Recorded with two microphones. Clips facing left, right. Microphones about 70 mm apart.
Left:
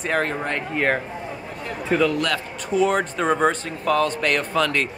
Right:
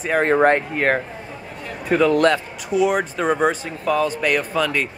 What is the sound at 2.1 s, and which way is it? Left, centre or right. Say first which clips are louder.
Speech: right 7 dB; right.